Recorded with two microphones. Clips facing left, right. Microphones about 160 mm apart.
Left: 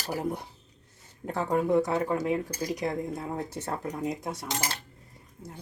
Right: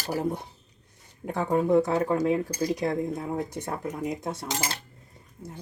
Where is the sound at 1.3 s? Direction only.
15° right (ahead or behind).